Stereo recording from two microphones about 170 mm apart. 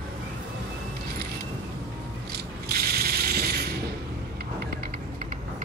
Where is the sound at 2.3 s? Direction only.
65° right (ahead or behind).